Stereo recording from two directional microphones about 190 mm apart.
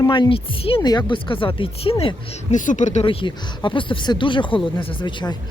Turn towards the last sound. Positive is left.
turn(degrees=25)  # may be behind; listen again after turning